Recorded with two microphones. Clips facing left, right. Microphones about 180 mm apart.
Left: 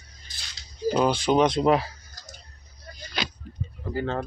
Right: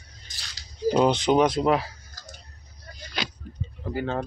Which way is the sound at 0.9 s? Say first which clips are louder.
Right 2 dB; 20° right (ahead or behind).